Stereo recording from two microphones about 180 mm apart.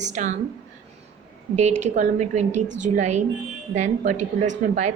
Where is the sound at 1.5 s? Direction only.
40° right (ahead or behind).